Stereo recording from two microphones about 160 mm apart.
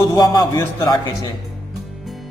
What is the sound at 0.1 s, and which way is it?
Speech, 25° left (ahead or behind).